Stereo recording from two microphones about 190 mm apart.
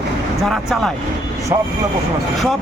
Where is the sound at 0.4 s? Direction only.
Centre (ahead or behind).